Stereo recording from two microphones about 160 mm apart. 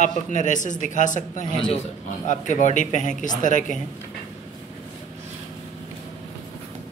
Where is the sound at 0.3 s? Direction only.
50° left (ahead or behind).